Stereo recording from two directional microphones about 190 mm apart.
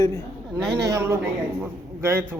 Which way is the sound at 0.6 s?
Centre (ahead or behind).